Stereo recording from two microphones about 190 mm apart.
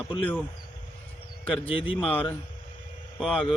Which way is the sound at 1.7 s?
30° left (ahead or behind).